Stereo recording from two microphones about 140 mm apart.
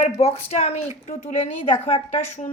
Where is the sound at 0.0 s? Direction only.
45° left (ahead or behind).